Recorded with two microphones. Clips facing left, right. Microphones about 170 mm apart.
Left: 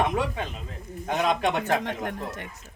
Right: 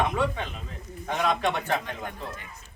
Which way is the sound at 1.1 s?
20° left (ahead or behind).